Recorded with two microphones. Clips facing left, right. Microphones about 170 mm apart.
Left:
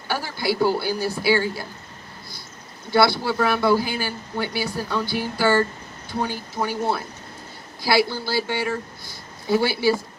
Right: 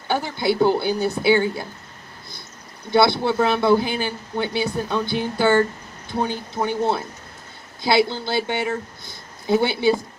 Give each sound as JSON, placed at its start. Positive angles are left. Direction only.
{"t": 0.1, "sound": "speech", "side_deg": -20}
{"t": 2.9, "sound": "speech", "side_deg": -20}